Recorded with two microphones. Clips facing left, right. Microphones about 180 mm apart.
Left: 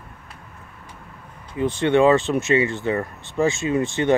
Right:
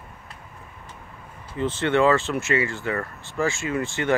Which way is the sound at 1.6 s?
15° left (ahead or behind).